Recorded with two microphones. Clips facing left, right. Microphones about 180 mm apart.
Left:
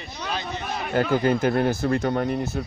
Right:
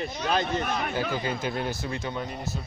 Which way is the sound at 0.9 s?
55° left (ahead or behind).